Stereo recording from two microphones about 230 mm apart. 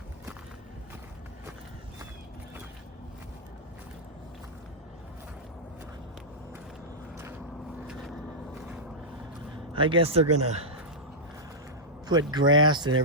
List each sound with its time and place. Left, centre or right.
9.7 s speech: right
10.2 s speech: right
12.0 s a man's voice: centre